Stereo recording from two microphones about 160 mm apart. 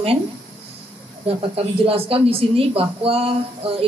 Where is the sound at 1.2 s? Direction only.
35° right (ahead or behind).